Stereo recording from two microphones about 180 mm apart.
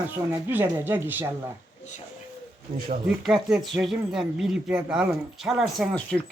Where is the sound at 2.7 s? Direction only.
50° right (ahead or behind).